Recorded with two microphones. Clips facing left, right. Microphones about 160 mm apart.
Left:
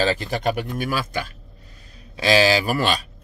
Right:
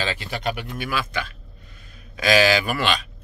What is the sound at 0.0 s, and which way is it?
Speech, 40° left (ahead or behind).